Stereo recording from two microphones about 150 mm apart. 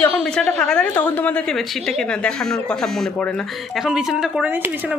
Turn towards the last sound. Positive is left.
turn(degrees=-10)  # may be behind; listen again after turning